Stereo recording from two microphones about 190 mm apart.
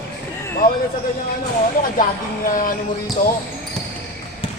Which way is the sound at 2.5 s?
45° left (ahead or behind).